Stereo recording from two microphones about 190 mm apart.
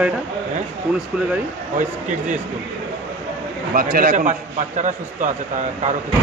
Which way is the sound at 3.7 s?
50° right (ahead or behind).